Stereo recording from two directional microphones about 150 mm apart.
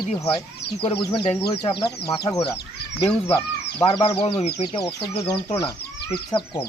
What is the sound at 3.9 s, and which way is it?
Speech, 40° left (ahead or behind).